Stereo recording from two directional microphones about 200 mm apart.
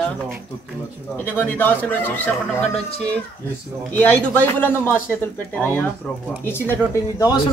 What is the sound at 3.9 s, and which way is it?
Speech, 10° left (ahead or behind).